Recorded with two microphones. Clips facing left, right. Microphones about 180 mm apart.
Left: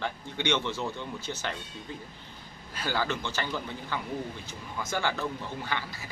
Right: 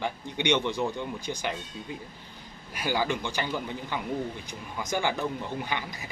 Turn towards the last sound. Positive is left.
turn(degrees=-15)  # may be behind; listen again after turning